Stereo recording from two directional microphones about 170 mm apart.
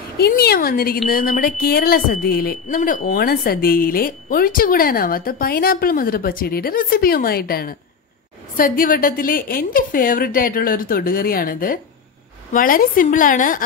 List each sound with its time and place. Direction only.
0.2 s a woman's voice: 65° left (ahead or behind); by 13.6 s 50° left (ahead or behind)